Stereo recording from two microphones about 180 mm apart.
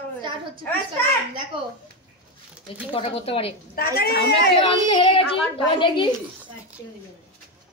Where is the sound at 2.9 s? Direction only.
30° left (ahead or behind).